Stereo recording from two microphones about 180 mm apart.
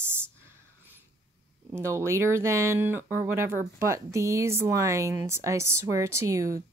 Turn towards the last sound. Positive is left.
turn(degrees=-15)  # may be behind; listen again after turning